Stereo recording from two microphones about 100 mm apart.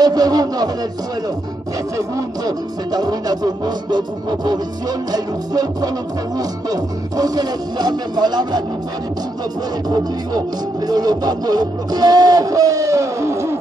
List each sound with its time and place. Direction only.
0.0 s speech: 40° right (ahead or behind)
2.0 s speech: 35° right (ahead or behind)
9.8 s speech: 40° right (ahead or behind)